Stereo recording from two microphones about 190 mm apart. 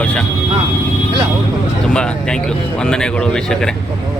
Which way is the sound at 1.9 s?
5° left (ahead or behind).